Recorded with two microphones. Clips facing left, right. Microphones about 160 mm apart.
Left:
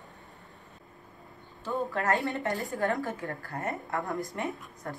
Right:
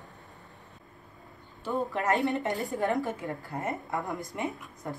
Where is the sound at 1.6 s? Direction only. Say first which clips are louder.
Right 1 dB; 20° right (ahead or behind).